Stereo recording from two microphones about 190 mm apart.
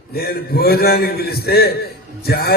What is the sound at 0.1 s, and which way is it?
A man's voice, 55° left (ahead or behind).